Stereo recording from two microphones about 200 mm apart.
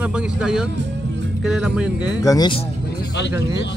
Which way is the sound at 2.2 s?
20° left (ahead or behind).